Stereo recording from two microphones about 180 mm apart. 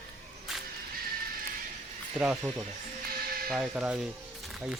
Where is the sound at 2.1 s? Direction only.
5° right (ahead or behind).